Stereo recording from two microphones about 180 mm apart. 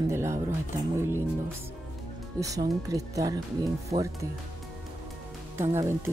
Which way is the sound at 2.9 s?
20° right (ahead or behind).